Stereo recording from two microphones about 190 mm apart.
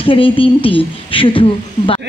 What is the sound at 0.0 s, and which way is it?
Speech, 30° left (ahead or behind).